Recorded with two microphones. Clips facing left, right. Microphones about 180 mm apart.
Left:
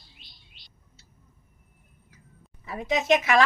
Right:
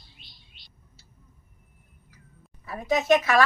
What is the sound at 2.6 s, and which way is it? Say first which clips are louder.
Speech: right 2 dB; 20° left (ahead or behind).